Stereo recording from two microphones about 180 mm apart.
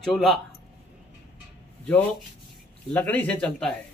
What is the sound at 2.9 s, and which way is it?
Speech, 5° left (ahead or behind).